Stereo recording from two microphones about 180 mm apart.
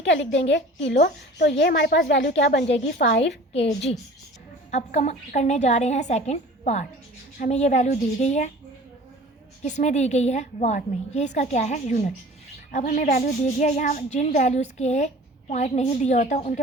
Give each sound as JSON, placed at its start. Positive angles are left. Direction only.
{"t": 0.0, "sound": "a woman's voice", "side_deg": 80}
{"t": 3.5, "sound": "a woman's voice", "side_deg": 35}
{"t": 9.6, "sound": "a woman's voice", "side_deg": 40}